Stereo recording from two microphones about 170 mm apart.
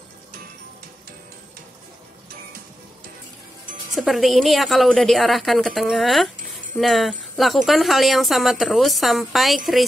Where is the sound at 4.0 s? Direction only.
Centre (ahead or behind).